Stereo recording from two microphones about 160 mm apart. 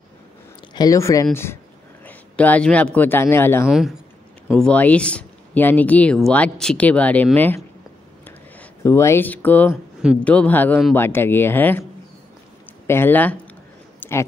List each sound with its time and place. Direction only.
0.7 s a man's voice: 20° left (ahead or behind)
3.6 s speech: 5° right (ahead or behind); by 11.8 s 10° left (ahead or behind)
12.8 s speech: 15° left (ahead or behind)
13.9 s a sound: 15° left (ahead or behind)